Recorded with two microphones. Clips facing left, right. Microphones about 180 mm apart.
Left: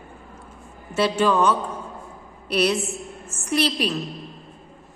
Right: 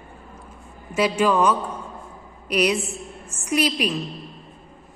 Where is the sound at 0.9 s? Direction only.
10° right (ahead or behind).